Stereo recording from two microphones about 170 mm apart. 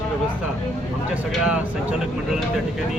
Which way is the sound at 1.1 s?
5° right (ahead or behind).